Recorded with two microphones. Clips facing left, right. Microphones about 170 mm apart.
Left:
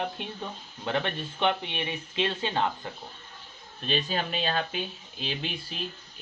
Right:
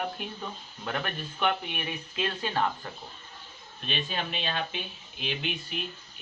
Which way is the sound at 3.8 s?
40° left (ahead or behind).